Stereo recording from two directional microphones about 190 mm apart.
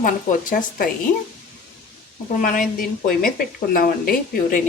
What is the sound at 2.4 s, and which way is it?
A woman's voice, 45° left (ahead or behind).